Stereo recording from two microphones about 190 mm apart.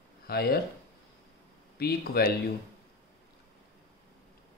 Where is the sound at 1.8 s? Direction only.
55° left (ahead or behind).